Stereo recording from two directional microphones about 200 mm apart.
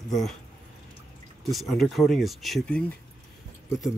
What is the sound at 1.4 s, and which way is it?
Speech, centre (ahead or behind).